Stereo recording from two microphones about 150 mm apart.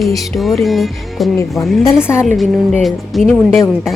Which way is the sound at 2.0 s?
15° left (ahead or behind).